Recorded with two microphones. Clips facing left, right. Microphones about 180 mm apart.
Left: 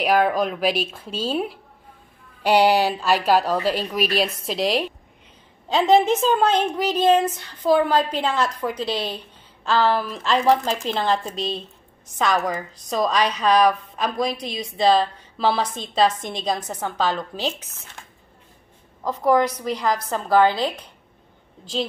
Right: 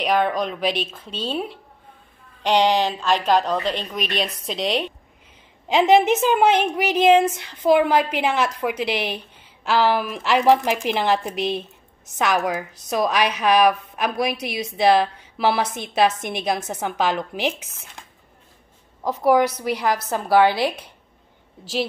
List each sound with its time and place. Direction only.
0.0 s a woman's voice: 5° left (ahead or behind)
5.7 s a woman's voice: 15° right (ahead or behind)
19.0 s a woman's voice: 10° right (ahead or behind)